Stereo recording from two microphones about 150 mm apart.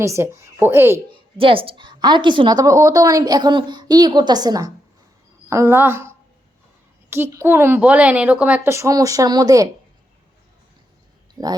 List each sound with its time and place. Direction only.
0.0 s a woman's voice: 20° right (ahead or behind)
1.1 s a woman's voice: 35° right (ahead or behind)
11.4 s a woman's voice: 25° right (ahead or behind)